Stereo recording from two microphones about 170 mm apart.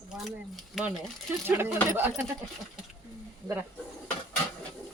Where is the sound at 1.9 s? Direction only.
15° right (ahead or behind).